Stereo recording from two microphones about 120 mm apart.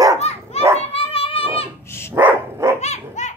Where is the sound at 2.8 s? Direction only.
75° left (ahead or behind).